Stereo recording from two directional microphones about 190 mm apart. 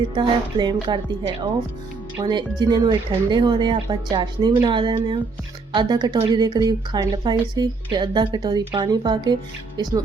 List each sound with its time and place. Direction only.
0.1 s a woman's voice: 25° right (ahead or behind)
2.1 s a woman's voice: 25° right (ahead or behind)